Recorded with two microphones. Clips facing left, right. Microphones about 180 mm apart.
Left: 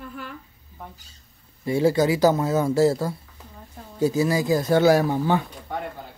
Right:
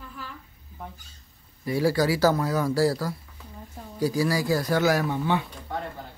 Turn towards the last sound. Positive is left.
turn(degrees=40)  # may be behind; listen again after turning